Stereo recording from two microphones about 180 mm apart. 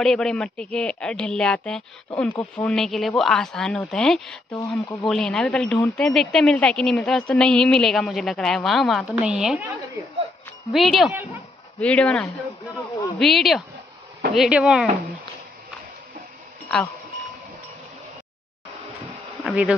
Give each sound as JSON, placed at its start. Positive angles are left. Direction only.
{"t": 0.0, "sound": "speech", "side_deg": 5}
{"t": 4.7, "sound": "speech", "side_deg": 15}
{"t": 5.0, "sound": "speech", "side_deg": 0}
{"t": 10.7, "sound": "speech", "side_deg": 0}
{"t": 19.4, "sound": "bee", "side_deg": 0}